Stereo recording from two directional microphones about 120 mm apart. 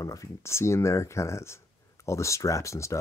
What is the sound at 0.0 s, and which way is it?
Speech, 25° left (ahead or behind).